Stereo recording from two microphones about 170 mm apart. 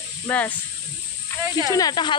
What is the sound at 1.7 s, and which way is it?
Speech, 20° left (ahead or behind).